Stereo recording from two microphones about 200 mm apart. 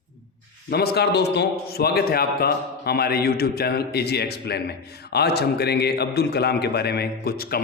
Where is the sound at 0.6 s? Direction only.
55° left (ahead or behind).